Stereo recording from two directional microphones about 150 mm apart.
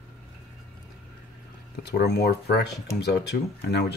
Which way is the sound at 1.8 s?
90° left.